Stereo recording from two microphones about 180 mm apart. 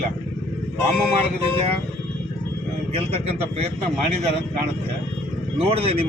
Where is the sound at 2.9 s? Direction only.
30° right (ahead or behind).